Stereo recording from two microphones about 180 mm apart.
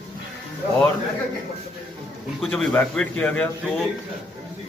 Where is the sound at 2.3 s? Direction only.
5° left (ahead or behind).